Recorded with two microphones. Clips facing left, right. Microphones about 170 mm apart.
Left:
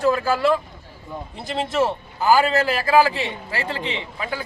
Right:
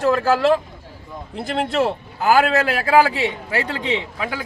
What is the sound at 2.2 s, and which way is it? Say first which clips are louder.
Speech: right 1 dB; 65° right (ahead or behind).